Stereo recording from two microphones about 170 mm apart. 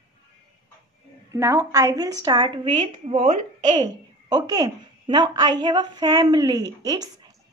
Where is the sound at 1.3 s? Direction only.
15° right (ahead or behind).